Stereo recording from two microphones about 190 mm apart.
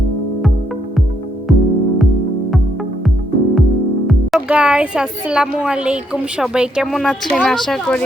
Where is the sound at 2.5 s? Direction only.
Centre (ahead or behind).